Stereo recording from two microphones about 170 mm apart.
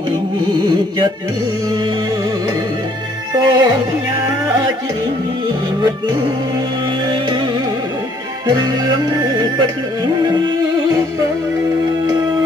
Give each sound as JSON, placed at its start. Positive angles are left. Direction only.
{"t": 3.3, "sound": "music", "side_deg": -25}
{"t": 8.5, "sound": "music", "side_deg": -25}